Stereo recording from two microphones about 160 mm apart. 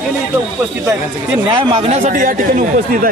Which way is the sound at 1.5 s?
35° right (ahead or behind).